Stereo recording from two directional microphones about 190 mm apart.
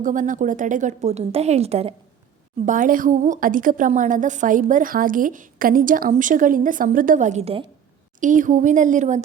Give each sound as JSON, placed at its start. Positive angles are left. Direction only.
{"t": 0.0, "sound": "a woman's voice", "side_deg": -45}
{"t": 2.6, "sound": "a woman's voice", "side_deg": -45}